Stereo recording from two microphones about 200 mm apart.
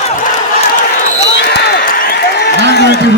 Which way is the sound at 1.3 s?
55° left (ahead or behind).